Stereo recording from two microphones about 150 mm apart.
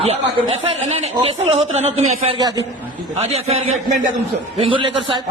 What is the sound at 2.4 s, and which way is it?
Speech, 25° right (ahead or behind).